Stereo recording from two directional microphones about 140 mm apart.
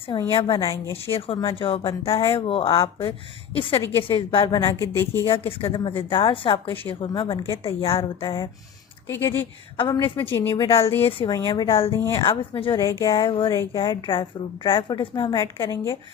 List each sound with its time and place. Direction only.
0.1 s speech: 35° left (ahead or behind); by 5.2 s 20° left (ahead or behind)
5.5 s speech: 40° left (ahead or behind)
9.0 s speech: 20° left (ahead or behind)
9.7 s speech: 35° left (ahead or behind)
10.2 s speech: 15° left (ahead or behind)
10.5 s speech: 35° left (ahead or behind)
11.9 s speech: 20° left (ahead or behind)
12.1 s speech: 35° left (ahead or behind)
12.8 s speech: 25° left (ahead or behind)
15.7 s speech: 20° left (ahead or behind)